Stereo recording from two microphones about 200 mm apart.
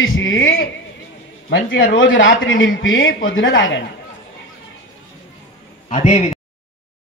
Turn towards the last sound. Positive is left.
turn(degrees=35)  # may be behind; listen again after turning